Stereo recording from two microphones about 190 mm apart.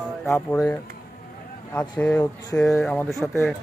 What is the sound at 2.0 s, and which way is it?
Speech, 5° left (ahead or behind).